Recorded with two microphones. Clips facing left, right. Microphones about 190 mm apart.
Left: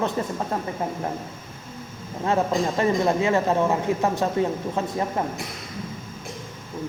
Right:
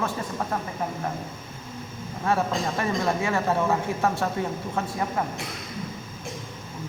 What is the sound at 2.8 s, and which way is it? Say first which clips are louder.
Speech: left 5 dB; 20° left (ahead or behind).